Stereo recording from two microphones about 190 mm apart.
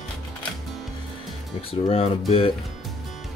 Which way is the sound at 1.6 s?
30° left (ahead or behind).